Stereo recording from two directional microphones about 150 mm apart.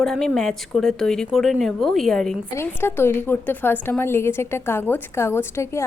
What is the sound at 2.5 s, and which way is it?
A woman's voice, 15° left (ahead or behind).